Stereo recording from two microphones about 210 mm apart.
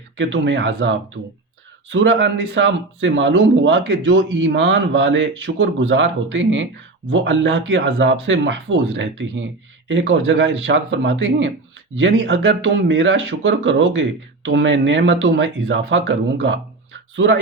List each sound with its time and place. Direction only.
0.2 s speech: 60° right (ahead or behind)